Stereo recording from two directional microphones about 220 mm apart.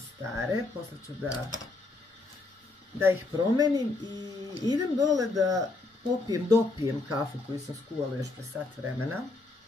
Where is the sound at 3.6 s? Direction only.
20° right (ahead or behind).